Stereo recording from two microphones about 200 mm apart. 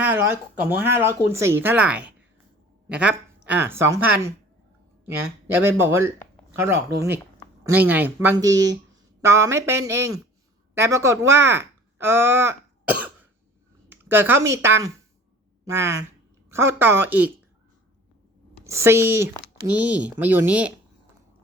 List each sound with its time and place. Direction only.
0.0 s speech: 10° right (ahead or behind)
8.5 s speech: 65° right (ahead or behind)
9.2 s speech: 15° right (ahead or behind)
18.6 s speech: 15° right (ahead or behind)